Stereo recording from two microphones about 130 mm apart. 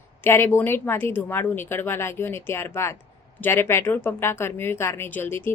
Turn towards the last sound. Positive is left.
turn(degrees=15)  # may be behind; listen again after turning